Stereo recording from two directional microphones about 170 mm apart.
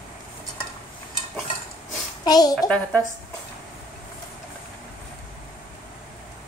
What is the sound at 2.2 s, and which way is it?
Speech, 25° left (ahead or behind).